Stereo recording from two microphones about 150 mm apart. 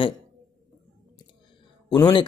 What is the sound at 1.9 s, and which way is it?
Speech, 30° left (ahead or behind).